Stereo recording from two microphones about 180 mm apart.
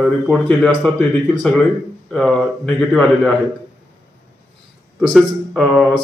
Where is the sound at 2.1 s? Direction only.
Centre (ahead or behind).